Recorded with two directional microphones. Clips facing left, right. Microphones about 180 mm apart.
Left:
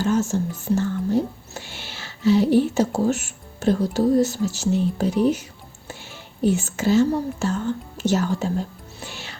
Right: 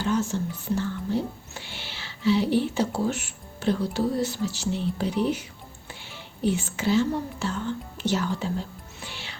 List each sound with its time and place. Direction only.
0.0 s speech: 45° left (ahead or behind)